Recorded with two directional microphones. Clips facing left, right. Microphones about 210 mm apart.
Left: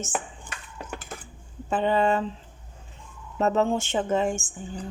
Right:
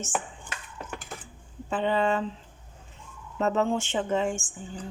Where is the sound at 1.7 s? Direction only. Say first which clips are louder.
Left 3 dB; 45° left (ahead or behind).